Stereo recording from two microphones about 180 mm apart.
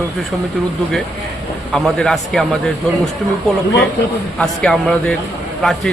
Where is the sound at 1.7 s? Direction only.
5° left (ahead or behind).